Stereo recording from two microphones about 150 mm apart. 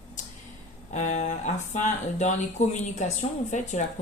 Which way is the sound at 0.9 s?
50° left (ahead or behind).